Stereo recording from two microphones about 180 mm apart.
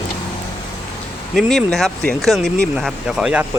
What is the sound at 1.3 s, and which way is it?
Speech, centre (ahead or behind).